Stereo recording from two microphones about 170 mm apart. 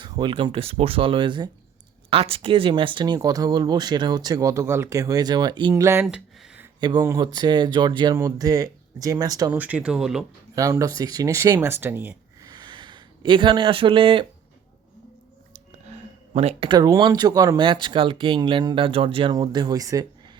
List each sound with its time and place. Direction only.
0.0 s speech: 30° right (ahead or behind)
5.8 s speech: 15° right (ahead or behind)
6.7 s speech: 25° right (ahead or behind)
9.5 s speech: 10° right (ahead or behind)
10.5 s speech: 20° right (ahead or behind)
16.3 s speech: 40° right (ahead or behind); by 20.3 s 20° right (ahead or behind)